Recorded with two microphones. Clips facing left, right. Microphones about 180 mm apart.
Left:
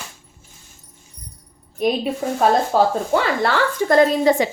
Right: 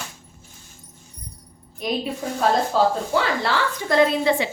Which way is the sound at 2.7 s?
50° left (ahead or behind).